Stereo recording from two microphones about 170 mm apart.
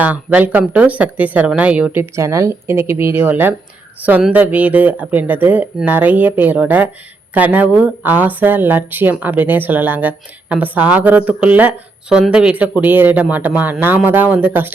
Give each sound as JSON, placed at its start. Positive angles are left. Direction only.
{"t": 0.0, "sound": "speech", "side_deg": -10}